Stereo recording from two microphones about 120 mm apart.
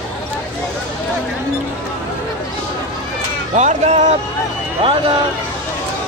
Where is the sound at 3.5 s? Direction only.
80° right.